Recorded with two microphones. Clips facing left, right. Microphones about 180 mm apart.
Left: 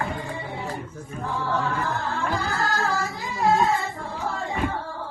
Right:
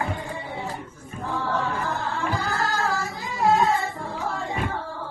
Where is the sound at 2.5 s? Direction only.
Centre (ahead or behind).